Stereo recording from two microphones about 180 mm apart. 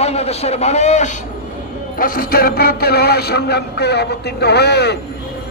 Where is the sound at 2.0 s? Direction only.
55° left (ahead or behind).